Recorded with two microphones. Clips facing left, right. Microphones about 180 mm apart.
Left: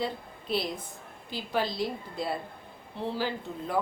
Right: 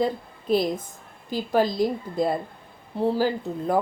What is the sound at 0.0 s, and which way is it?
A woman's voice, 45° right (ahead or behind).